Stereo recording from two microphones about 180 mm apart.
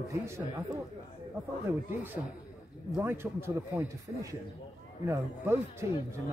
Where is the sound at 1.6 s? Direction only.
10° right (ahead or behind).